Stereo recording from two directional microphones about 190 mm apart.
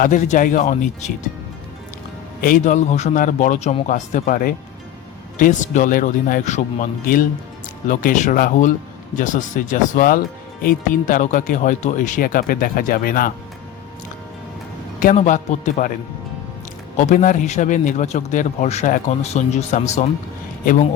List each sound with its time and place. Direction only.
0.0 s a man's voice: 40° left (ahead or behind)
2.4 s a man's voice: 45° left (ahead or behind)
15.0 s a man's voice: 40° left (ahead or behind)
17.0 s a man's voice: 40° left (ahead or behind)